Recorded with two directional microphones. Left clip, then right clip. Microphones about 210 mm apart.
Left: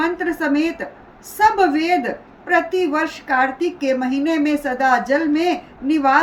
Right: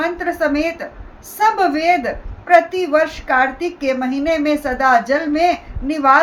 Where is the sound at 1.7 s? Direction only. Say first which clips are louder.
Right 3 dB; 5° right (ahead or behind).